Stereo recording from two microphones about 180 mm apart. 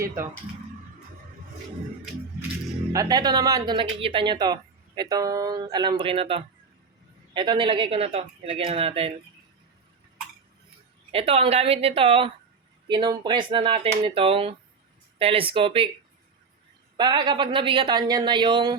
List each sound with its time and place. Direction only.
2.9 s speech: 20° right (ahead or behind)
11.1 s speech: 30° right (ahead or behind)
17.0 s speech: 25° right (ahead or behind)